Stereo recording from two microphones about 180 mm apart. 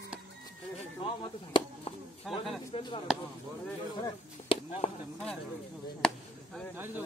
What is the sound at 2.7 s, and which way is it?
Speech, 30° left (ahead or behind).